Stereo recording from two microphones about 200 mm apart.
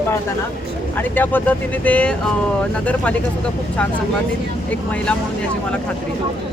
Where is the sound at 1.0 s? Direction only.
10° left (ahead or behind).